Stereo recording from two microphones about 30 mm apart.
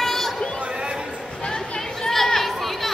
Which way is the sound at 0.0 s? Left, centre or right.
Centre.